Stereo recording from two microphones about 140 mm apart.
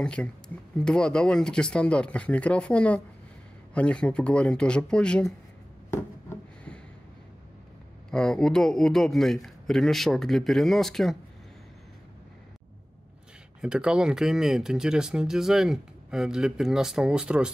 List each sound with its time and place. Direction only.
0.0 s speech: 5° left (ahead or behind)
5.9 s a sound: 20° left (ahead or behind)
8.1 s speech: 5° left (ahead or behind)
13.6 s speech: 5° right (ahead or behind)